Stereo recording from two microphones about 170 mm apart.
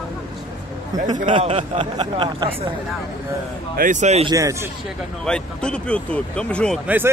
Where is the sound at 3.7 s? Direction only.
50° right (ahead or behind).